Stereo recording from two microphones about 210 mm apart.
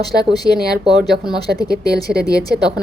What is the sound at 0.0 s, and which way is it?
Speech, 20° left (ahead or behind).